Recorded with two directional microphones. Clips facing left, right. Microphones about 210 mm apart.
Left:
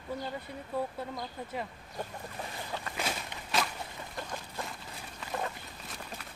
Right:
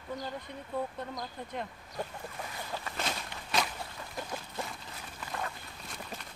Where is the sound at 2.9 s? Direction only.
10° left (ahead or behind).